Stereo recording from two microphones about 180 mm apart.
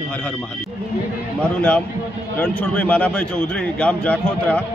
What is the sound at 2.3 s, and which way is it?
A man's voice, 10° left (ahead or behind).